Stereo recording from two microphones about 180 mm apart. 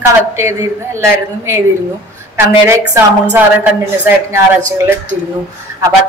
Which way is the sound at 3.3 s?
10° right (ahead or behind).